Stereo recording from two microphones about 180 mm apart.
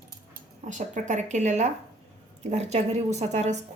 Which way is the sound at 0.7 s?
45° right (ahead or behind).